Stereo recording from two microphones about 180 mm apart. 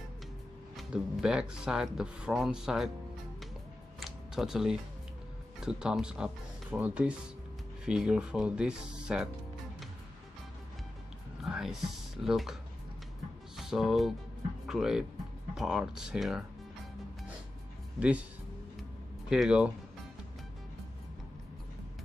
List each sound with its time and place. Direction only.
0.7 s speech: 5° right (ahead or behind)
4.0 s a sound: centre (ahead or behind)
5.6 s speech: 5° right (ahead or behind)
11.4 s music: centre (ahead or behind)
12.2 s speech: centre (ahead or behind)
13.6 s speech: centre (ahead or behind)
17.9 s speech: 5° right (ahead or behind)
19.2 s speech: 5° right (ahead or behind)